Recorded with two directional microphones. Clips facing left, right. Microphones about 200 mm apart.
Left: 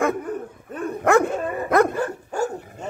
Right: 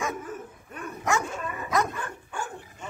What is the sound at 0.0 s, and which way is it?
Dog, 60° left (ahead or behind).